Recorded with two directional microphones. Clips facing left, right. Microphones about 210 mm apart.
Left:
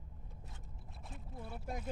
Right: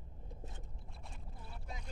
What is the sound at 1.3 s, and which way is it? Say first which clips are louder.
Boat: left 9 dB; 55° left (ahead or behind).